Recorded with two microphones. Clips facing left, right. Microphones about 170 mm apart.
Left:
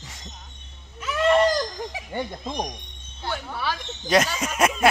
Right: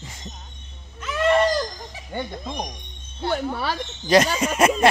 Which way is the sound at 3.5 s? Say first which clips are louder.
Right 2 dB; 45° right (ahead or behind).